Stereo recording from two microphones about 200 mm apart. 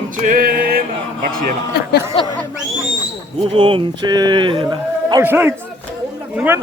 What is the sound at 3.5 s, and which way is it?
A man's voice, 25° right (ahead or behind).